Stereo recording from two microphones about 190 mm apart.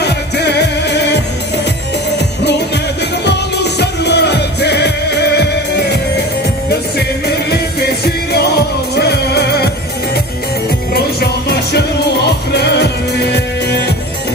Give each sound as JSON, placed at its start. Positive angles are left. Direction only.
{"t": 0.0, "sound": "music", "side_deg": 60}
{"t": 10.9, "sound": "music", "side_deg": 55}